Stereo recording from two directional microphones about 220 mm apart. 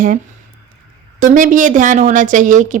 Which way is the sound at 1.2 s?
35° right (ahead or behind).